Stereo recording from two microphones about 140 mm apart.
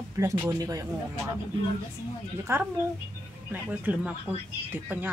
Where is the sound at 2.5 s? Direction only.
20° right (ahead or behind).